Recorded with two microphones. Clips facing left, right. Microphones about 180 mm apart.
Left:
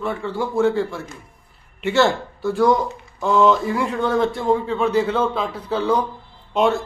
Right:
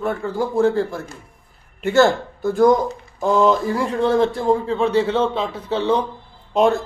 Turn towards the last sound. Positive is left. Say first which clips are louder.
# right 2 dB
turn(degrees=-40)  # may be behind; listen again after turning